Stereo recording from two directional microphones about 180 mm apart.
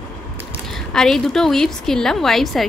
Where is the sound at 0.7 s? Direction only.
5° left (ahead or behind).